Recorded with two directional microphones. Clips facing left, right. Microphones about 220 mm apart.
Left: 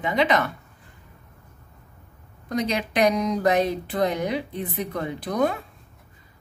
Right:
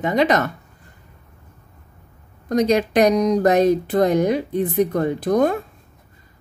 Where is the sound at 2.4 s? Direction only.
45° right (ahead or behind).